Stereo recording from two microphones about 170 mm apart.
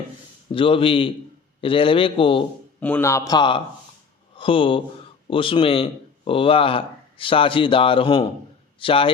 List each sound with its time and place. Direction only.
0.5 s speech: 30° left (ahead or behind)
2.8 s a man's voice: 15° left (ahead or behind); by 9.0 s 30° left (ahead or behind)